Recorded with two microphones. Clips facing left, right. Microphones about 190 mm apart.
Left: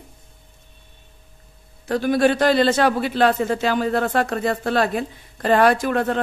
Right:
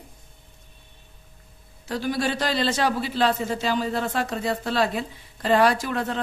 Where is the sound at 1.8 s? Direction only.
55° left (ahead or behind).